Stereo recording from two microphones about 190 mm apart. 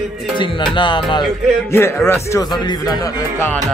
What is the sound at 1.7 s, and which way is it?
Speech, 15° left (ahead or behind).